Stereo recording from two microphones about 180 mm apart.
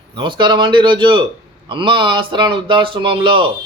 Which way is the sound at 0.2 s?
25° right (ahead or behind).